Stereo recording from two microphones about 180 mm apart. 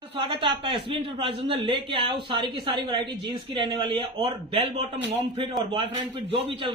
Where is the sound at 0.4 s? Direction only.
25° right (ahead or behind).